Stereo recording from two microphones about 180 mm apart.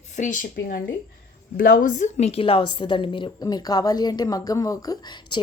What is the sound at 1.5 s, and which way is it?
A woman's voice, 50° left (ahead or behind).